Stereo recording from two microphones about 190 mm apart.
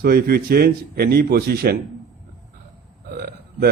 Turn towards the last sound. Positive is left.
turn(degrees=-55)  # may be behind; listen again after turning